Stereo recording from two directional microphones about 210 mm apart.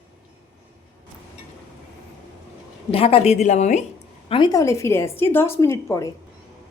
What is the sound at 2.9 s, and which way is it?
Speech, 25° left (ahead or behind).